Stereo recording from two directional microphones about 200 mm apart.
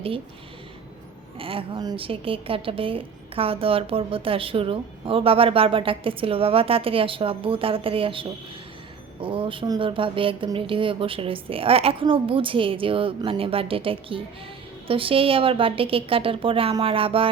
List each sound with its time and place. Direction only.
1.4 s a woman's voice: 25° right (ahead or behind)